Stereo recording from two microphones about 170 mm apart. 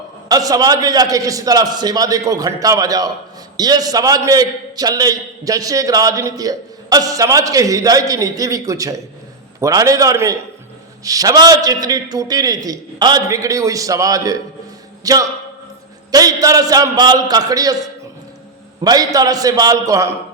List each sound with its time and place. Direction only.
0.3 s a man's voice: 20° right (ahead or behind)
18.8 s a man's voice: 20° right (ahead or behind)